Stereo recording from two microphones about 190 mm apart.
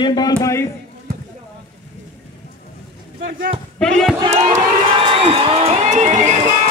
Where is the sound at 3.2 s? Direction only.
50° right (ahead or behind).